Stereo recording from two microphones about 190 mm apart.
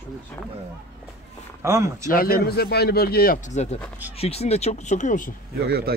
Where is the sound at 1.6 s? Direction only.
15° right (ahead or behind).